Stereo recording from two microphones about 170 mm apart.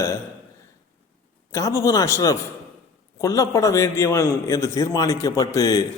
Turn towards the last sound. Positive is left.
turn(degrees=20)  # may be behind; listen again after turning